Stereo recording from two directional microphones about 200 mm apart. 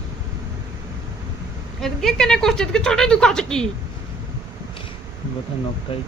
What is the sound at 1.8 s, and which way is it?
Speech, centre (ahead or behind).